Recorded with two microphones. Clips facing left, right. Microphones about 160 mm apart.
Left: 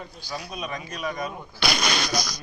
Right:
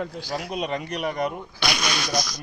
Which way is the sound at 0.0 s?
80° right.